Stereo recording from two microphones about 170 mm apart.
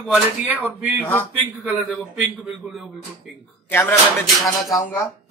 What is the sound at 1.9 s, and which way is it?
Speech, centre (ahead or behind).